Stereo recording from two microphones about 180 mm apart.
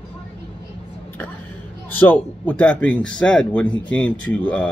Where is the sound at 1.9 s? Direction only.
10° left (ahead or behind).